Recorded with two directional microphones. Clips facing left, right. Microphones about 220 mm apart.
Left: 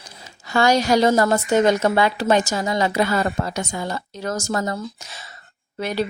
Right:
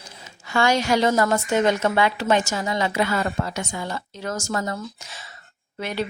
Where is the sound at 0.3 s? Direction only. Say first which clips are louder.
Left 3 dB; 40° left (ahead or behind).